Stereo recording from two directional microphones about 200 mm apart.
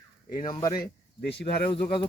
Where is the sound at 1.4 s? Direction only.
55° left (ahead or behind).